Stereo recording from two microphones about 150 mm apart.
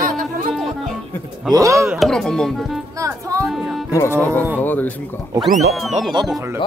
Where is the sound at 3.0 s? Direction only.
20° right (ahead or behind).